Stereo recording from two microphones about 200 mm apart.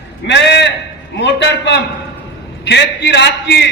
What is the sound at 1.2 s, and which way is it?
A man's voice, 60° left (ahead or behind).